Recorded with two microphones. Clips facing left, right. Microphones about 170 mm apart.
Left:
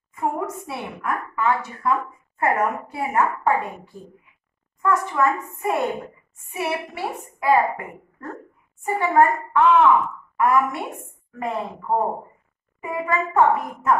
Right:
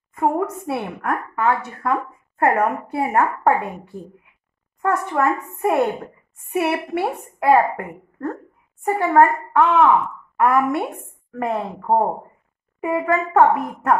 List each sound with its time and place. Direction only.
0.1 s a woman's voice: 55° right (ahead or behind)